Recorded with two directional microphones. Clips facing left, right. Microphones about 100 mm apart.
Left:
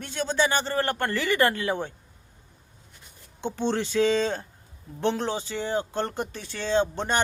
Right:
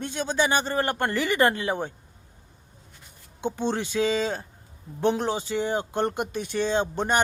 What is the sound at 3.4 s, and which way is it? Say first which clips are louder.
Speech: even; 15° right (ahead or behind).